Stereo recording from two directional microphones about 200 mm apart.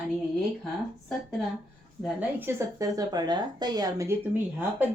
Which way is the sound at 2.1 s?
10° right (ahead or behind).